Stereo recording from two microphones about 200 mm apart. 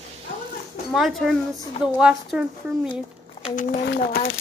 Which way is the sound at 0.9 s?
Centre (ahead or behind).